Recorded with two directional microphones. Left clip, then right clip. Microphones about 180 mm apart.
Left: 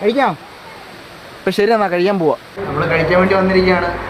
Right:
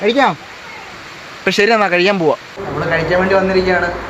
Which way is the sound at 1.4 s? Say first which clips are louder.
Right 2 dB; 5° right (ahead or behind).